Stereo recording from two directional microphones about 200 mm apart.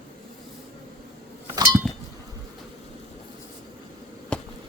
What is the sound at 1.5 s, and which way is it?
Chink, 20° right (ahead or behind).